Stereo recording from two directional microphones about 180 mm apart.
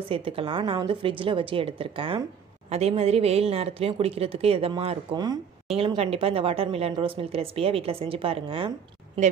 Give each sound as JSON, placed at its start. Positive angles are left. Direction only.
{"t": 0.1, "sound": "a woman's voice", "side_deg": -30}